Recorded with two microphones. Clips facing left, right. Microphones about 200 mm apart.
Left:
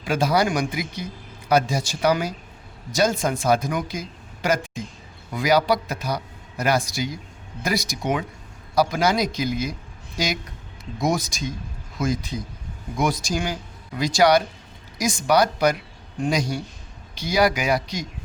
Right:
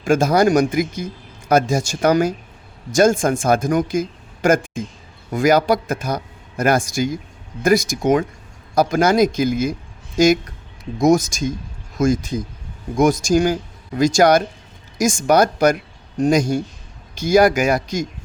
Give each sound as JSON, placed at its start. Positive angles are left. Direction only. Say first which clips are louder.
{"t": 0.0, "sound": "a man's voice", "louder": "right 6 dB", "side_deg": -45}